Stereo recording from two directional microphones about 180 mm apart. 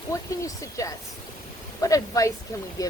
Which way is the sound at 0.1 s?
20° left (ahead or behind).